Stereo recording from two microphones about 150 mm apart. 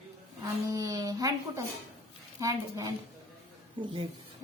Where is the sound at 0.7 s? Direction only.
25° right (ahead or behind).